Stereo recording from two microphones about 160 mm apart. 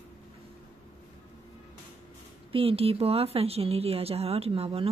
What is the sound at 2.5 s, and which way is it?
Speech, 35° right (ahead or behind).